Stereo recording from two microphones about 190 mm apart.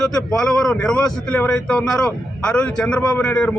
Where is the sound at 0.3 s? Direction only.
5° left (ahead or behind).